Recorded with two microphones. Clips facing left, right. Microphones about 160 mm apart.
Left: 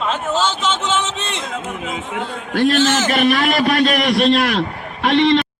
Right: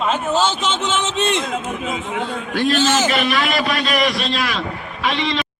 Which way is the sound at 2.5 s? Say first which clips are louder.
Left 2 dB; 55° left (ahead or behind).